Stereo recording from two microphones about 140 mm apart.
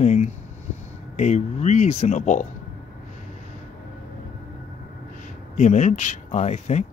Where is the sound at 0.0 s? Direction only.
55° left (ahead or behind).